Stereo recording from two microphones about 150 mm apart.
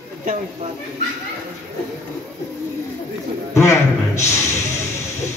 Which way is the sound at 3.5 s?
20° left (ahead or behind).